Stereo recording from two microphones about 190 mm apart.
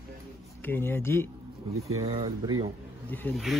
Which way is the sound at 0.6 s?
10° left (ahead or behind).